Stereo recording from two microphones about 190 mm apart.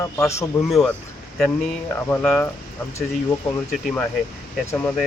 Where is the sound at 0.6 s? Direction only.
Centre (ahead or behind).